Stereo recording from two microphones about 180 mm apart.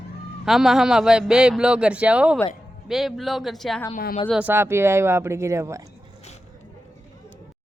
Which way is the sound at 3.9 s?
50° left (ahead or behind).